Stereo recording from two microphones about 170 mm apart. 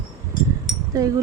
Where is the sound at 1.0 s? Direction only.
25° right (ahead or behind).